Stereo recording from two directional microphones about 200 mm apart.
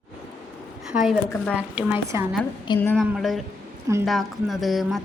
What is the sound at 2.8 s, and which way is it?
A woman's voice, 5° left (ahead or behind).